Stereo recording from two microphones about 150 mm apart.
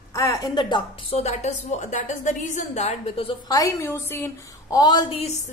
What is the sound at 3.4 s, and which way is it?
A woman's voice, 20° left (ahead or behind).